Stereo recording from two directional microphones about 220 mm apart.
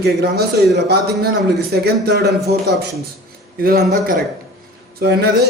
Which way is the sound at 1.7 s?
45° right (ahead or behind).